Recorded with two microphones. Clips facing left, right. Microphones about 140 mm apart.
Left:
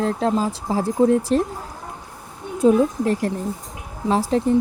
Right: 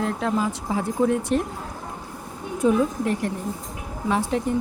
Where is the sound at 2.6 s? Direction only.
35° left (ahead or behind).